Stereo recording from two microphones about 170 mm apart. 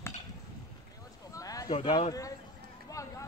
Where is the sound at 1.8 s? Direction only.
25° left (ahead or behind).